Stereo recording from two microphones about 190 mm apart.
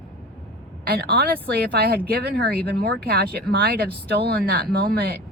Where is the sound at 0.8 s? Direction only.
55° right (ahead or behind).